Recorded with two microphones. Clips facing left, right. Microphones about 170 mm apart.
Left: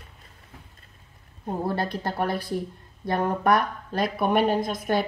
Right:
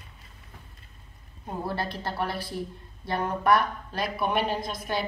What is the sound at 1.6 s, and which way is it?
A woman's voice, 50° left (ahead or behind).